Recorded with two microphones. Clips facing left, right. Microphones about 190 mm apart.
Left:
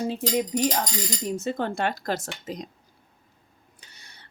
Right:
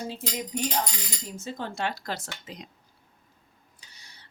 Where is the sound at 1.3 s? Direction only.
65° left (ahead or behind).